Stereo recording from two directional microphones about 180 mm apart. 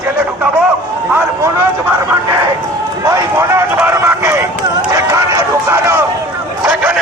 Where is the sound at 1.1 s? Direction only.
15° right (ahead or behind).